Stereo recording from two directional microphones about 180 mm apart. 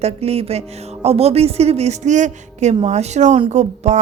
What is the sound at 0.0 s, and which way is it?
Speech, 35° right (ahead or behind).